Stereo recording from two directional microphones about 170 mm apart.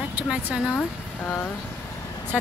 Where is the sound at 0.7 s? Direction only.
10° left (ahead or behind).